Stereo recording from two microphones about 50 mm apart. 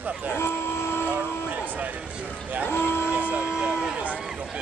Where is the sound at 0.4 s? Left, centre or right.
Left.